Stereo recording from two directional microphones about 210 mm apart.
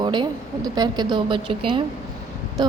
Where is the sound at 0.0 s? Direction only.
20° right (ahead or behind).